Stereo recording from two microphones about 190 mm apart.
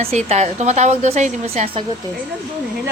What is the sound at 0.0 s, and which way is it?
A woman's voice, 35° right (ahead or behind).